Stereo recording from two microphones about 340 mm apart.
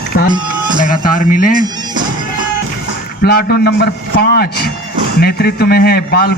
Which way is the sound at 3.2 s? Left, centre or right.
Left.